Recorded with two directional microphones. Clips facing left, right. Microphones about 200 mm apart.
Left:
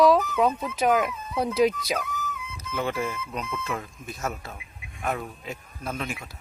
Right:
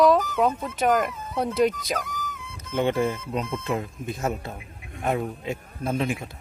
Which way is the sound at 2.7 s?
30° right (ahead or behind).